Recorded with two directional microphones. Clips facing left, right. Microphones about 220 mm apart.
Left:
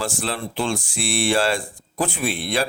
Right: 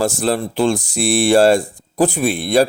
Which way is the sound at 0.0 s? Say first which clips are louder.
Right 9 dB; 40° right (ahead or behind).